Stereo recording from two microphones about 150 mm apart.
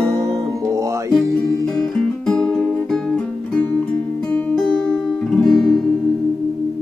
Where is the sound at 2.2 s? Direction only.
5° left (ahead or behind).